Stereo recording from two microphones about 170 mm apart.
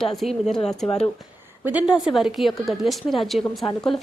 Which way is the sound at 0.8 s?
35° left (ahead or behind).